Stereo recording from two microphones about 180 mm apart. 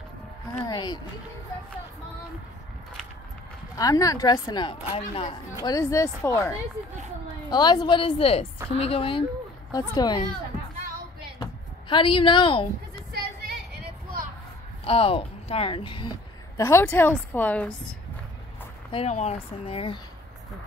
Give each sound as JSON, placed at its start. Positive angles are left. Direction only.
{"t": 0.6, "sound": "a woman's voice", "side_deg": 25}
{"t": 3.7, "sound": "a woman's voice", "side_deg": 20}
{"t": 5.6, "sound": "speech", "side_deg": 20}
{"t": 7.5, "sound": "a woman's voice", "side_deg": 25}
{"t": 9.7, "sound": "a woman's voice", "side_deg": 20}
{"t": 11.9, "sound": "a woman's voice", "side_deg": 30}
{"t": 14.9, "sound": "a woman's voice", "side_deg": 30}
{"t": 18.9, "sound": "speech", "side_deg": 35}